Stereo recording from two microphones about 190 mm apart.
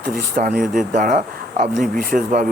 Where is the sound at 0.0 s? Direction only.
50° right (ahead or behind).